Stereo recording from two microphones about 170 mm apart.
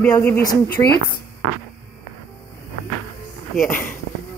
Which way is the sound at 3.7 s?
10° left (ahead or behind).